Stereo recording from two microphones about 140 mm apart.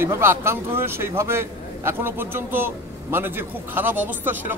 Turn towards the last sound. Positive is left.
turn(degrees=-15)  # may be behind; listen again after turning